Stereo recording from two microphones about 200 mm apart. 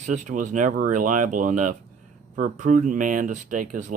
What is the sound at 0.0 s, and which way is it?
Speech, 40° right (ahead or behind).